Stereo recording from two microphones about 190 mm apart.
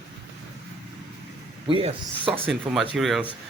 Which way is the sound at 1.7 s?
30° right (ahead or behind).